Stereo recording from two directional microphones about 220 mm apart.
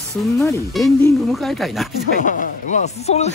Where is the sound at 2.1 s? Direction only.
35° left (ahead or behind).